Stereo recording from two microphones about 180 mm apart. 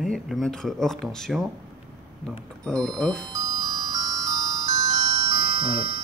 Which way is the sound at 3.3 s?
20° right (ahead or behind).